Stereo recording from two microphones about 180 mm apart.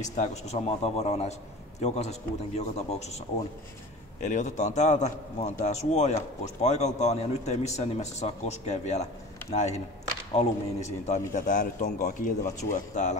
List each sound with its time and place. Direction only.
0.0 s a man's voice: 40° left (ahead or behind)